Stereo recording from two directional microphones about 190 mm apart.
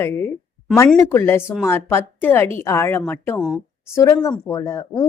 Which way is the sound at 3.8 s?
15° left (ahead or behind).